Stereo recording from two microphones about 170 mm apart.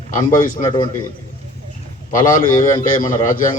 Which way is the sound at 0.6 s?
25° left (ahead or behind).